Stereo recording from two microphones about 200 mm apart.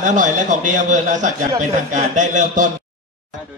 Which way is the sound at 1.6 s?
40° right (ahead or behind).